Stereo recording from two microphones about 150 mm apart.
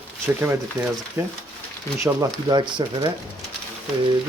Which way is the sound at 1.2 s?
15° right (ahead or behind).